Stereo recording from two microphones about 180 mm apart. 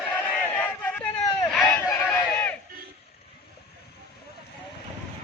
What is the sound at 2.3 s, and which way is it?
Battle cry, 10° left (ahead or behind).